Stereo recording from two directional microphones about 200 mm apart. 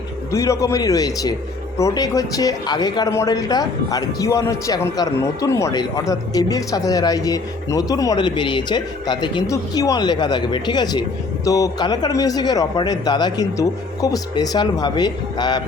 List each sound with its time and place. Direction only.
0.3 s a man's voice: 15° left (ahead or behind)